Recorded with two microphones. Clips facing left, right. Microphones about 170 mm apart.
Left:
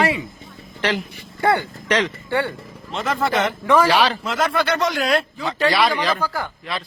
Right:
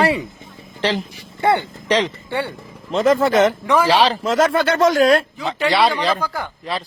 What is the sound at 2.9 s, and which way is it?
Speech, 40° right (ahead or behind).